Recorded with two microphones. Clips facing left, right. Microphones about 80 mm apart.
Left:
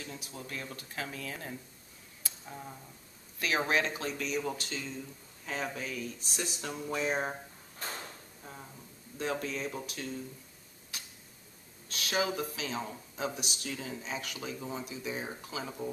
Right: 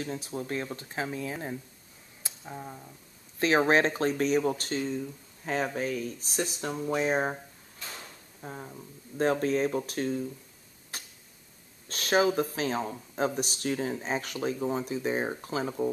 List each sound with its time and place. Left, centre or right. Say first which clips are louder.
0.0 s speech: right 9 dB; right
2.2 s tick-tock: right 4 dB; centre
3.3 s speech: right 7 dB; right
7.8 s drawer open or close: left 3 dB; left
8.4 s speech: right 10 dB; right
10.9 s tick-tock: right 4 dB; right
11.9 s speech: right 7 dB; right